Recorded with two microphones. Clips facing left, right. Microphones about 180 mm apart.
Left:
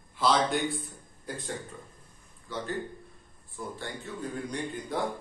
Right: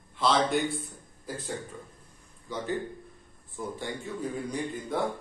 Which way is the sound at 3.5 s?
15° right (ahead or behind).